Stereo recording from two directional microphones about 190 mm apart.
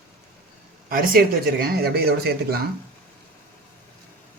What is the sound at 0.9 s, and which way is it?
Speech, 50° right (ahead or behind).